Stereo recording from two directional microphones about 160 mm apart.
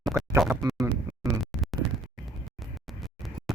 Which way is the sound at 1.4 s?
Centre (ahead or behind).